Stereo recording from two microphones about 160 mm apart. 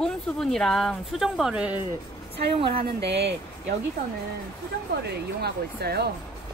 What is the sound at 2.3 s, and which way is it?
Speech, 90° right.